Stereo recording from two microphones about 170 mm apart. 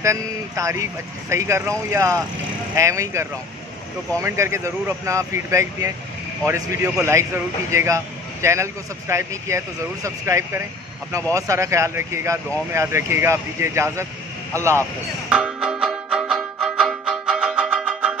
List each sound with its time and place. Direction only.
0.0 s speech: 20° right (ahead or behind)
15.2 s music: 5° right (ahead or behind)